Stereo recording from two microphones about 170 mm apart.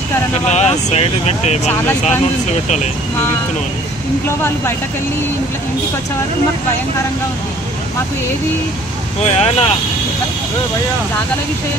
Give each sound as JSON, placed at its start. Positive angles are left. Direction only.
{"t": 0.5, "sound": "speech", "side_deg": 40}
{"t": 9.3, "sound": "speech", "side_deg": 35}